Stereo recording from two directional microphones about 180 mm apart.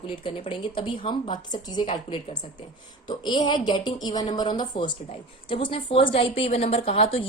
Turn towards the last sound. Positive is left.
turn(degrees=35)  # may be behind; listen again after turning